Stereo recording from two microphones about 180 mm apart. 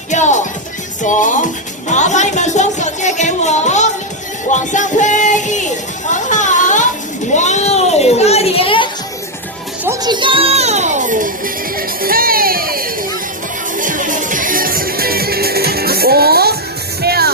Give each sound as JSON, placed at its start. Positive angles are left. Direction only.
{"t": 0.1, "sound": "music", "side_deg": 40}
{"t": 1.9, "sound": "speech", "side_deg": 40}
{"t": 4.5, "sound": "music", "side_deg": 45}
{"t": 6.1, "sound": "a sound", "side_deg": 45}
{"t": 7.3, "sound": "children playing", "side_deg": 40}
{"t": 9.8, "sound": "music", "side_deg": -20}
{"t": 12.0, "sound": "speech", "side_deg": -55}
{"t": 13.7, "sound": "music", "side_deg": -45}